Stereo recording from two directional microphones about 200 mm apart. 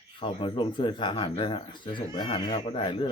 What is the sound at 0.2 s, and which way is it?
Speech, 25° left (ahead or behind).